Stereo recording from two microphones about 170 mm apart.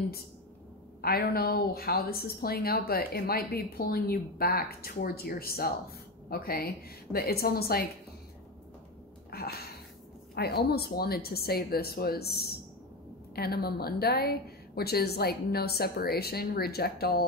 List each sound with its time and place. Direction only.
1.0 s speech: 65° left (ahead or behind)
9.3 s a sound: 65° left (ahead or behind)
10.3 s a woman's voice: 70° left (ahead or behind)